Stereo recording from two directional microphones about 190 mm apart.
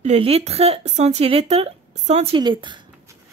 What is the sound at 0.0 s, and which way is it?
Speech, 35° right (ahead or behind).